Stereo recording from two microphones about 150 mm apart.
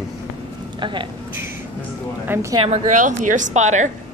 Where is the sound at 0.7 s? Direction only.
30° right (ahead or behind).